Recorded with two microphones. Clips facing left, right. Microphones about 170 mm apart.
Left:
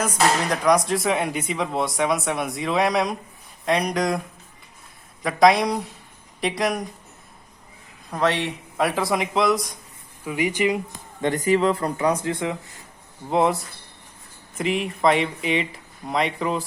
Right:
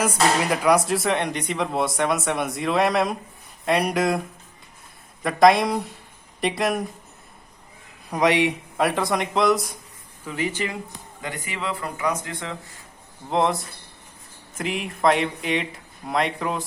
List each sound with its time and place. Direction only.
0.0 s speech: 5° right (ahead or behind)
5.2 s speech: centre (ahead or behind)
8.1 s speech: 15° right (ahead or behind)
8.8 s speech: centre (ahead or behind)
10.2 s speech: 15° left (ahead or behind)
11.2 s speech: 40° left (ahead or behind); by 12.5 s 20° left (ahead or behind)
13.3 s speech: 5° left (ahead or behind)
14.6 s speech: centre (ahead or behind)